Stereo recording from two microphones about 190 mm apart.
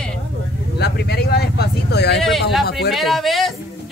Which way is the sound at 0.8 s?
55° left (ahead or behind).